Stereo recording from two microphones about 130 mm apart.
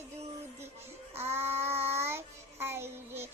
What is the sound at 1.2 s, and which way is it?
Child singing, 20° right (ahead or behind).